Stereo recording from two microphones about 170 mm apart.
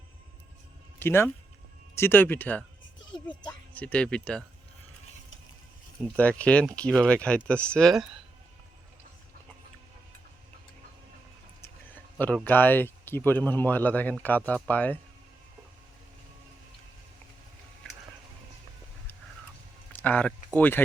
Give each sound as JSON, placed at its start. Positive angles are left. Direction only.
{"t": 0.9, "sound": "speech", "side_deg": 15}
{"t": 3.1, "sound": "speech", "side_deg": 25}
{"t": 3.7, "sound": "speech", "side_deg": 10}
{"t": 6.1, "sound": "speech", "side_deg": 10}
{"t": 12.2, "sound": "speech", "side_deg": 10}
{"t": 19.9, "sound": "a sound", "side_deg": 10}
{"t": 20.6, "sound": "speech", "side_deg": 10}